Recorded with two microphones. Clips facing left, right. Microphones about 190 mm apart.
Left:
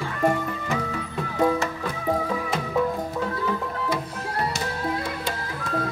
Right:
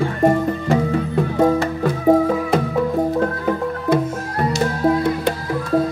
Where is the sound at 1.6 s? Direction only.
50° right (ahead or behind).